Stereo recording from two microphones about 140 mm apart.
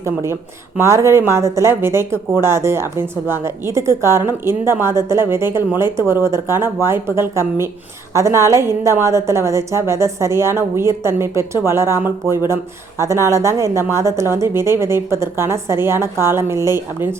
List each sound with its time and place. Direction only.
0.0 s speech: 20° right (ahead or behind)